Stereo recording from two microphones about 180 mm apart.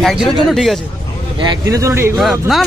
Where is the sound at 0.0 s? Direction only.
Centre (ahead or behind).